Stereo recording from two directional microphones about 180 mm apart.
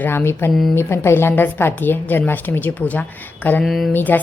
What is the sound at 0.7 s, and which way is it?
A woman's voice, 15° left (ahead or behind).